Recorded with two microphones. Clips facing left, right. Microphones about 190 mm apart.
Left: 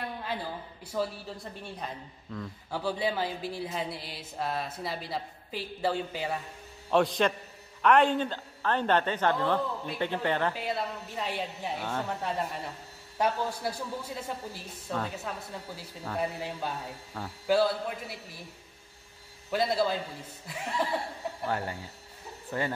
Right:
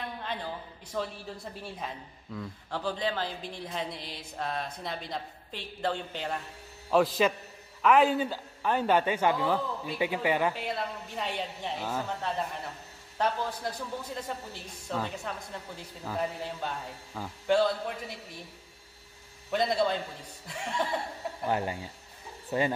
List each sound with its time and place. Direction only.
0.2 s a sound: 5° left (ahead or behind)
0.9 s a woman's voice: centre (ahead or behind)
2.8 s a woman's voice: 10° left (ahead or behind)
13.2 s a man's voice: 10° left (ahead or behind)
19.5 s a woman's voice: centre (ahead or behind)
21.5 s a man's voice: 15° right (ahead or behind)